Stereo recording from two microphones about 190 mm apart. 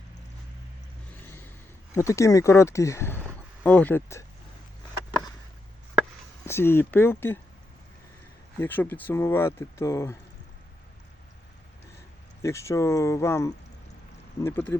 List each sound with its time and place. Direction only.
2.0 s speech: 15° left (ahead or behind)
6.4 s speech: 15° left (ahead or behind)
8.5 s speech: 10° left (ahead or behind)
12.4 s speech: 15° left (ahead or behind)